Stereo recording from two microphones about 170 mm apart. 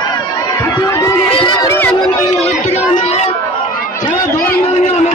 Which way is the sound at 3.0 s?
40° left (ahead or behind).